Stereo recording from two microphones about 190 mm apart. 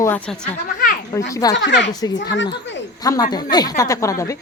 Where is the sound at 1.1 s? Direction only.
15° left (ahead or behind).